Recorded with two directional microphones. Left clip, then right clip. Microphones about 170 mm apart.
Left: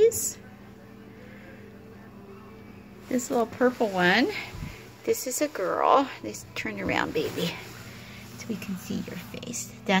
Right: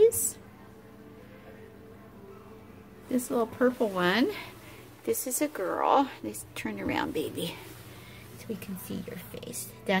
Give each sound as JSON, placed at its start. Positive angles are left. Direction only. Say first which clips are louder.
{"t": 3.1, "sound": "a woman's voice", "louder": "left 3 dB", "side_deg": -5}